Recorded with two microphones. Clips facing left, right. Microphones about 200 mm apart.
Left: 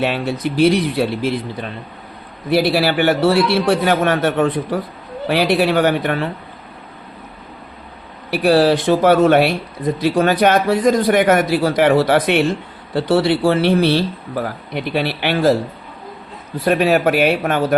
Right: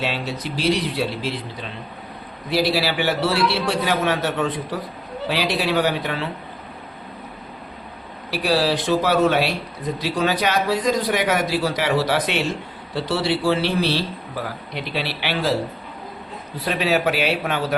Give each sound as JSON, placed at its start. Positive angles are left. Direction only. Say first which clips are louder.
{"t": 0.0, "sound": "a man's voice", "louder": "left 7 dB", "side_deg": 55}
{"t": 8.3, "sound": "a man's voice", "louder": "left 7 dB", "side_deg": 55}
{"t": 16.6, "sound": "a man's voice", "louder": "left 6 dB", "side_deg": 50}